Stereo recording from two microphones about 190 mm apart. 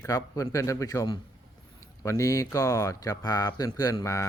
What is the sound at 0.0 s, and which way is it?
A man's voice, 15° left (ahead or behind).